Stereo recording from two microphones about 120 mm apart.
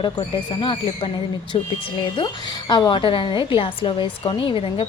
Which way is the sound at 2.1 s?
40° left (ahead or behind).